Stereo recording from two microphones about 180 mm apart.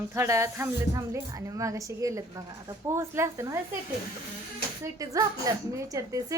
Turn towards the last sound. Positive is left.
turn(degrees=-20)  # may be behind; listen again after turning